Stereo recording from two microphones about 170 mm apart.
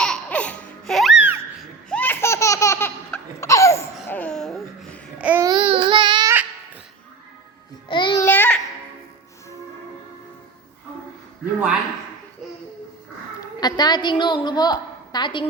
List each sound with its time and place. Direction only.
0.0 s music: 5° left (ahead or behind)
1.9 s laughter: 10° left (ahead or behind)
4.0 s babbling: 10° left (ahead or behind); by 5.5 s 10° right (ahead or behind)
5.5 s a sound: 30° right (ahead or behind)
7.9 s babbling: 30° left (ahead or behind)
8.2 s babbling: 10° left (ahead or behind)
13.4 s a woman's voice: 25° left (ahead or behind)